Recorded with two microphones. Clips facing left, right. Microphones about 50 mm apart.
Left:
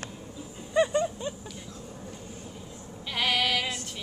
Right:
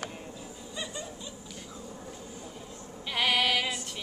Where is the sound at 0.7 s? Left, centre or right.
Left.